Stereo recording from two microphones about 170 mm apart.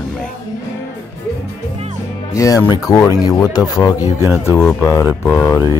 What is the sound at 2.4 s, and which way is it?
Speech, 20° left (ahead or behind).